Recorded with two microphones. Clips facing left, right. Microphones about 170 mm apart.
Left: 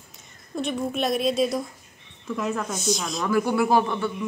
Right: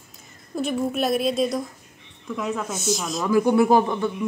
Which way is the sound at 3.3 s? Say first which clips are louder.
Right 4 dB; 20° right (ahead or behind).